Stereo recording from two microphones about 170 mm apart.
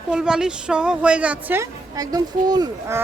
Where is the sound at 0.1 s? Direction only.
5° right (ahead or behind).